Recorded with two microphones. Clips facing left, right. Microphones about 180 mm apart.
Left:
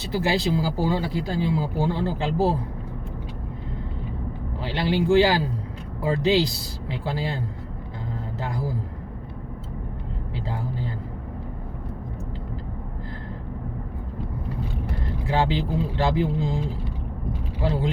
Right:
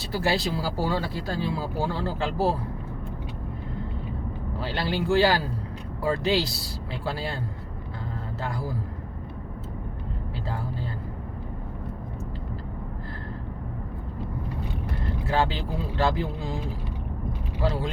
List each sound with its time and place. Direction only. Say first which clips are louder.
0.0 s speech: left 2 dB; 20° left (ahead or behind)
4.6 s speech: left 4 dB; 15° left (ahead or behind)
8.4 s a man's voice: left 1 dB; 20° left (ahead or behind)
15.3 s speech: left 3 dB; 15° left (ahead or behind)
17.6 s speech: left 2 dB; 20° left (ahead or behind)